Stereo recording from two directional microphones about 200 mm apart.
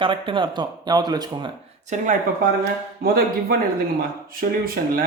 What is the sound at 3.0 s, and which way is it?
Speech, 50° right (ahead or behind).